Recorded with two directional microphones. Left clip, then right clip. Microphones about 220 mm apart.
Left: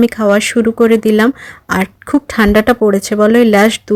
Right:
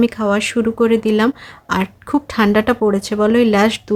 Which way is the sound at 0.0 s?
25° left (ahead or behind).